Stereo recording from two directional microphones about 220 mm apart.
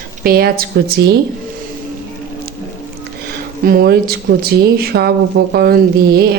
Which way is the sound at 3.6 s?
40° right (ahead or behind).